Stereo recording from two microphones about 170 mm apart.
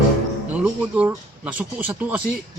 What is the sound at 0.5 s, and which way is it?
A woman's voice, 5° right (ahead or behind).